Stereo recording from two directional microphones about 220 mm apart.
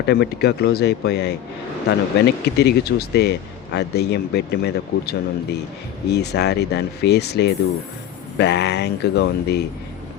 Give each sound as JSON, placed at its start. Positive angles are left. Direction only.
{"t": 0.0, "sound": "a man's voice", "side_deg": 50}